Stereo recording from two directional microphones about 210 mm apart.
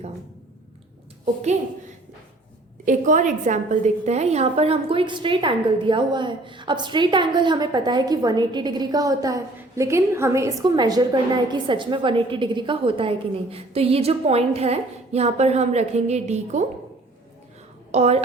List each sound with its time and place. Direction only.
1.2 s a woman's voice: 30° right (ahead or behind)
2.8 s a woman's voice: 35° right (ahead or behind)
17.9 s a woman's voice: 30° right (ahead or behind)